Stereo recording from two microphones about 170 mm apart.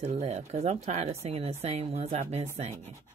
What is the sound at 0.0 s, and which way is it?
Speech, 40° right (ahead or behind).